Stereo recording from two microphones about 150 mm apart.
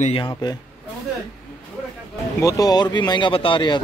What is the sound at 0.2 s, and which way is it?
Speech, 30° left (ahead or behind).